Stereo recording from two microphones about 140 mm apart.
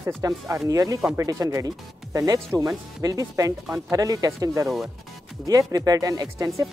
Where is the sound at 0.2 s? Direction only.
25° right (ahead or behind).